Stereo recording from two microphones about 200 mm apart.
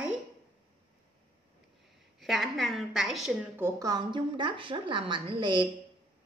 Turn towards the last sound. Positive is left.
turn(degrees=-25)  # may be behind; listen again after turning